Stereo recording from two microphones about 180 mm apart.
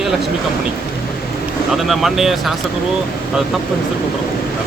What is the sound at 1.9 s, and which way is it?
Speech, centre (ahead or behind).